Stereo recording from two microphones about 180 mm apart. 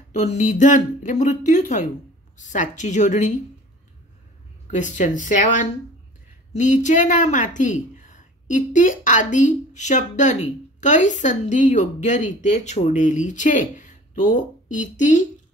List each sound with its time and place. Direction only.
0.1 s a woman's voice: 40° left (ahead or behind)
4.6 s a woman's voice: 45° left (ahead or behind)